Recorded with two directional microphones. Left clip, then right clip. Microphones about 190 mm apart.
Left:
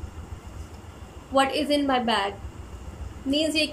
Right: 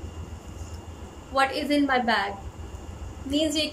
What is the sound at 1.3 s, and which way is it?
Speech, 10° left (ahead or behind).